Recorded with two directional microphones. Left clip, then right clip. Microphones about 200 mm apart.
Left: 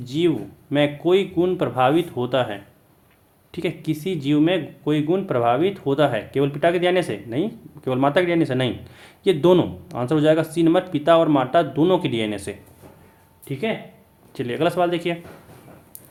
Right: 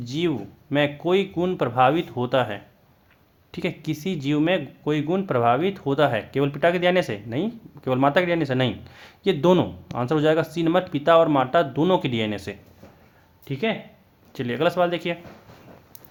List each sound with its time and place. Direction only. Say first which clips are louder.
0.0 s speech: left 4 dB; 30° right (ahead or behind)